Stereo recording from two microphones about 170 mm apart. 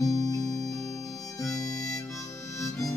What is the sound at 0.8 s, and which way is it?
Harmonica, 20° left (ahead or behind).